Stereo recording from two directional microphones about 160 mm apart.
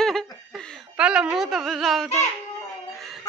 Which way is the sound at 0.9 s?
5° right (ahead or behind).